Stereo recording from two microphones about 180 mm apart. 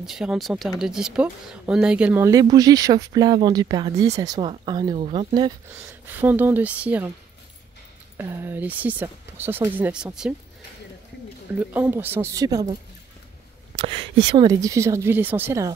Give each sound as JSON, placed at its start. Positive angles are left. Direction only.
{"t": 0.0, "sound": "speech", "side_deg": -5}
{"t": 5.0, "sound": "speech", "side_deg": -35}
{"t": 5.8, "sound": "speech", "side_deg": -10}
{"t": 8.2, "sound": "speech", "side_deg": -15}
{"t": 11.5, "sound": "speech", "side_deg": -10}
{"t": 13.7, "sound": "a sound", "side_deg": -30}
{"t": 14.3, "sound": "speech", "side_deg": -20}